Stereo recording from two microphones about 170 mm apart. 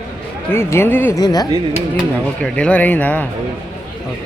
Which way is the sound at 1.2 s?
25° left (ahead or behind).